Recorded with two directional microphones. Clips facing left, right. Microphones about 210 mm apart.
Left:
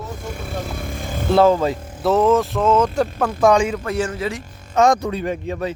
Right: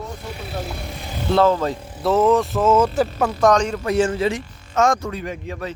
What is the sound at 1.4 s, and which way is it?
Speech, 10° left (ahead or behind).